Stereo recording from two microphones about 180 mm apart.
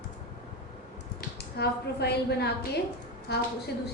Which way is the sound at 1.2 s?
65° left (ahead or behind).